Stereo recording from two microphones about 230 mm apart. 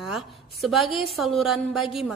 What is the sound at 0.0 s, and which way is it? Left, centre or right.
A woman's voice, centre.